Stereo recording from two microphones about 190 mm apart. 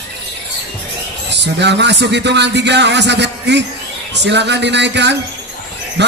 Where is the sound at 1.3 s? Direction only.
65° right (ahead or behind).